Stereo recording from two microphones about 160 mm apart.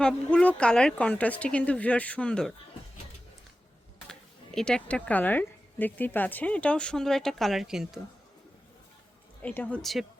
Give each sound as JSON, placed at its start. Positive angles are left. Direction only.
{"t": 0.0, "sound": "speech", "side_deg": 5}
{"t": 4.1, "sound": "speech", "side_deg": 5}
{"t": 9.4, "sound": "speech", "side_deg": 10}